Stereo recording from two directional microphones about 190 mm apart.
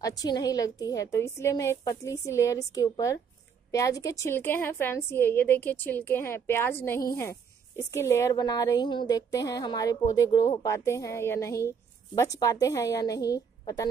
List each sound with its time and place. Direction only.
0.0 s a woman's voice: 20° left (ahead or behind)